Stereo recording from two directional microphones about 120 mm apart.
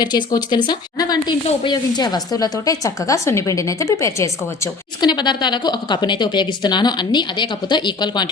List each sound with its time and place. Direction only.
0.0 s a woman's voice: 35° left (ahead or behind)
4.9 s a woman's voice: 40° left (ahead or behind)